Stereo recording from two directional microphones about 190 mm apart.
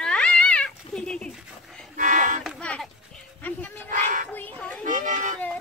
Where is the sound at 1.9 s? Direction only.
45° right (ahead or behind).